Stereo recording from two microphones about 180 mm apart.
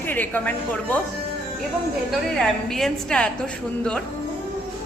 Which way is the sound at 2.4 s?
Centre (ahead or behind).